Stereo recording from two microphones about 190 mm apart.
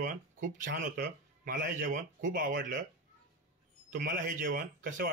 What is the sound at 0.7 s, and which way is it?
Speech, 50° right (ahead or behind).